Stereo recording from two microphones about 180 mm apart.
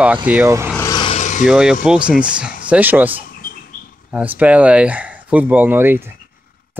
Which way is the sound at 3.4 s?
50° left (ahead or behind).